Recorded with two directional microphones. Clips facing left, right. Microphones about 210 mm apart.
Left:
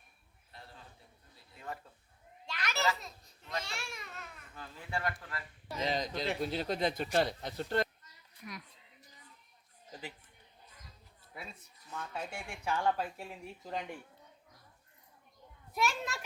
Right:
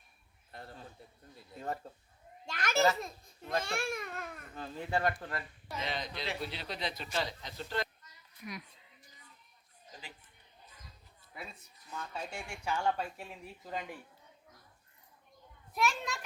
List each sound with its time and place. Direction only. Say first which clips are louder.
0.5 s a sound: right 5 dB; 50° right (ahead or behind)
1.5 s a child's voice: right 5 dB; 40° right (ahead or behind)
4.5 s speech: right 5 dB; 30° right (ahead or behind)
5.7 s speech: left 4 dB; 40° left (ahead or behind)
12.1 s speech: even; centre (ahead or behind)
15.7 s speech: right 1 dB; centre (ahead or behind)